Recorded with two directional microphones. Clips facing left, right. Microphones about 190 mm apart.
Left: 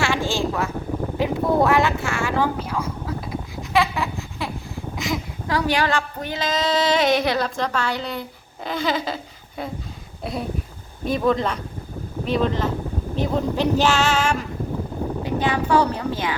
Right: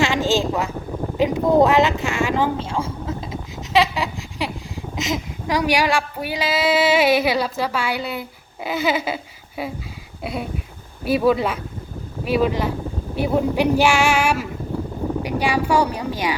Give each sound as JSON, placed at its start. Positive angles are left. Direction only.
{"t": 0.0, "sound": "a sound", "side_deg": -20}
{"t": 1.1, "sound": "a woman's voice", "side_deg": -20}
{"t": 11.0, "sound": "speech", "side_deg": -10}